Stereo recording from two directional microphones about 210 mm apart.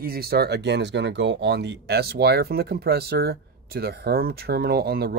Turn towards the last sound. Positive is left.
turn(degrees=-45)  # may be behind; listen again after turning